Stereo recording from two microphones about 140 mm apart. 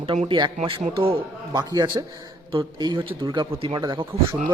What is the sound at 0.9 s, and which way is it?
Speech, 40° right (ahead or behind).